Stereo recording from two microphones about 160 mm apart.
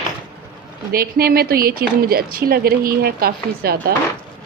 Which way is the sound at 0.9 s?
70° right (ahead or behind).